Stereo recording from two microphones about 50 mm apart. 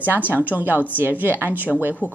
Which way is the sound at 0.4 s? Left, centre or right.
Right.